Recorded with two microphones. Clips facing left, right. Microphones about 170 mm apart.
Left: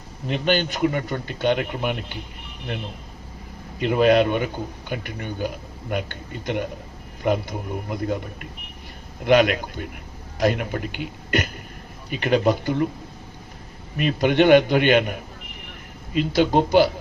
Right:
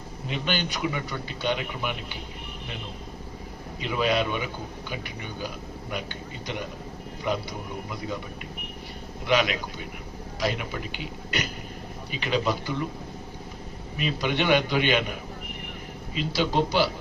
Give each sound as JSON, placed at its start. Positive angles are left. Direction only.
{"t": 0.3, "sound": "a man's voice", "side_deg": 45}
{"t": 3.8, "sound": "a man's voice", "side_deg": 50}
{"t": 9.2, "sound": "a man's voice", "side_deg": 50}
{"t": 13.9, "sound": "a man's voice", "side_deg": 50}